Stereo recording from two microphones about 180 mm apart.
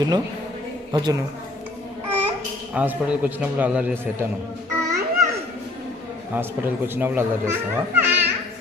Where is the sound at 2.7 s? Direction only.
5° right (ahead or behind).